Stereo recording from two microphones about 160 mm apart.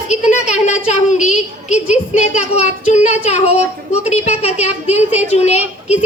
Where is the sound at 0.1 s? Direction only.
45° left (ahead or behind).